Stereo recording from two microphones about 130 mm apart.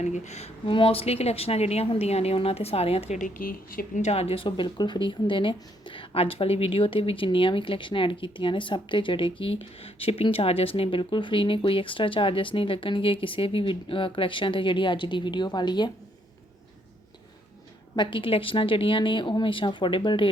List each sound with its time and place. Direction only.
0.0 s speech: 60° left (ahead or behind)
3.2 s speech: 90° left; by 15.9 s 35° left (ahead or behind)
17.9 s speech: 40° left (ahead or behind)